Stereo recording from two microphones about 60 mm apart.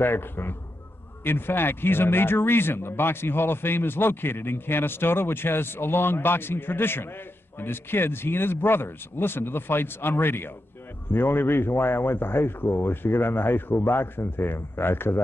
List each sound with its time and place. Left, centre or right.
0.0 s speech: left